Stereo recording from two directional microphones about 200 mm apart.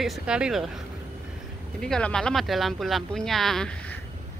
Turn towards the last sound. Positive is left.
turn(degrees=5)  # may be behind; listen again after turning